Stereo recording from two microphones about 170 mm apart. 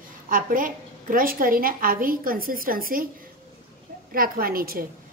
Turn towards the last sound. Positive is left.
turn(degrees=-60)  # may be behind; listen again after turning